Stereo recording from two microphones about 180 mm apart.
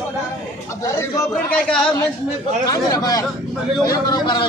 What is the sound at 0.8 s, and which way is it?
Speech, 15° left (ahead or behind).